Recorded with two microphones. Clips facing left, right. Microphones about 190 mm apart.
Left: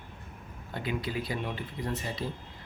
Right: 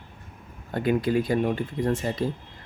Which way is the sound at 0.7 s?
50° right (ahead or behind).